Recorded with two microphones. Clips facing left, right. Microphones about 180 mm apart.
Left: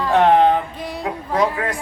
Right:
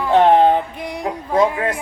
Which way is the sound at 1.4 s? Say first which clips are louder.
Right 3 dB; 25° right (ahead or behind).